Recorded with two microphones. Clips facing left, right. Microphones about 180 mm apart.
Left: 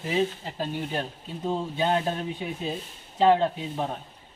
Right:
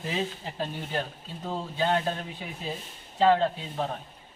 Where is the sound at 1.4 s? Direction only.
20° left (ahead or behind).